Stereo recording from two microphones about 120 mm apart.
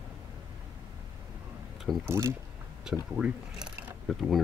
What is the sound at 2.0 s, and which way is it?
Speech, 25° right (ahead or behind).